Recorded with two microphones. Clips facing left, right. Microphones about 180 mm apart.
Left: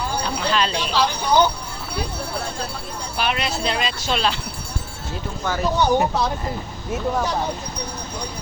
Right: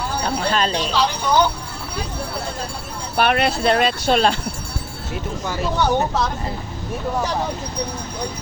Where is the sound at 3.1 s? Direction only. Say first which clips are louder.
Right 6 dB; 55° right (ahead or behind).